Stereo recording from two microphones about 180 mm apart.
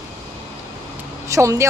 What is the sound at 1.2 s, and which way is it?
Speech, 15° right (ahead or behind).